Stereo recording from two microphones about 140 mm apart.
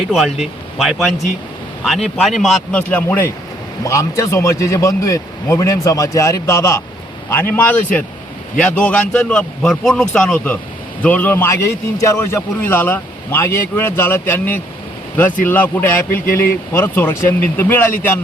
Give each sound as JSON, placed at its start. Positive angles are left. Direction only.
{"t": 0.1, "sound": "speech", "side_deg": -5}
{"t": 2.9, "sound": "a man's voice", "side_deg": 15}